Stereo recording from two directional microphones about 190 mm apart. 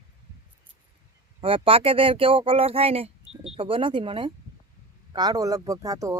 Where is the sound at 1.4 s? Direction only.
30° right (ahead or behind).